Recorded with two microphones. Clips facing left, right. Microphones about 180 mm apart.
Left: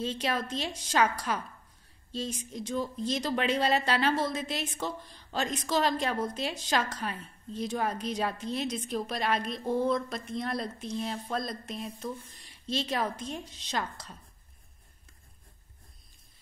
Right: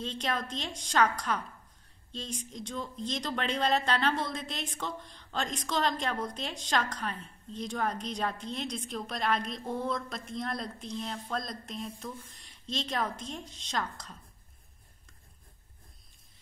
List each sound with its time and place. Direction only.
0.0 s a woman's voice: 5° left (ahead or behind)